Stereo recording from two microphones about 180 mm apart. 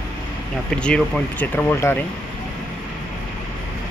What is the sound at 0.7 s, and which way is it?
Speech, 5° left (ahead or behind).